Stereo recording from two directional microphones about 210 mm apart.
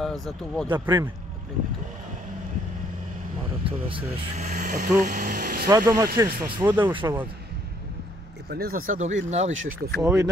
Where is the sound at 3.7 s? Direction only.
25° right (ahead or behind); by 5.7 s 45° right (ahead or behind).